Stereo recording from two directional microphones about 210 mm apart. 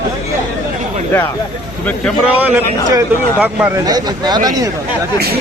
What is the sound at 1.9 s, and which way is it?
Speech, 5° left (ahead or behind).